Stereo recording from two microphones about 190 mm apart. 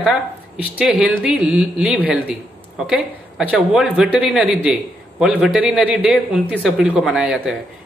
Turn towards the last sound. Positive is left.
turn(degrees=0)  # may be behind; listen again after turning